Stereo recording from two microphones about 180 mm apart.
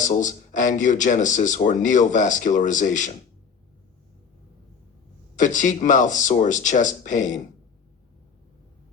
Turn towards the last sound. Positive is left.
turn(degrees=45)  # may be behind; listen again after turning